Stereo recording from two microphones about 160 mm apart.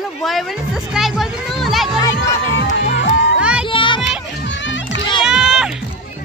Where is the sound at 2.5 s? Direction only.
90° left.